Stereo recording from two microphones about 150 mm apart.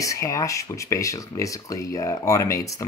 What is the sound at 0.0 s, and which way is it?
Speech, 20° left (ahead or behind).